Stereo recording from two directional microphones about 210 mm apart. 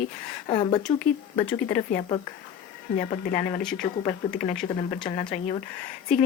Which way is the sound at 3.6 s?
Centre (ahead or behind).